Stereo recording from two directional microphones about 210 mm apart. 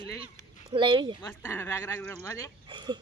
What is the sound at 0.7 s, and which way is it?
Speech, 25° right (ahead or behind).